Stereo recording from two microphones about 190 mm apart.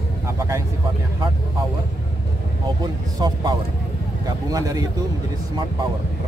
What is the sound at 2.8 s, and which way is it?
Speech, 20° right (ahead or behind).